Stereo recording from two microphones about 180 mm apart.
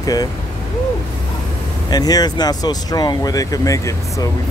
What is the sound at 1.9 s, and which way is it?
Speech, 20° left (ahead or behind).